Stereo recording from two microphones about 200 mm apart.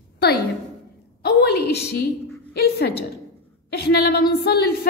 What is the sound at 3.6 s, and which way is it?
A woman's voice, 55° left (ahead or behind).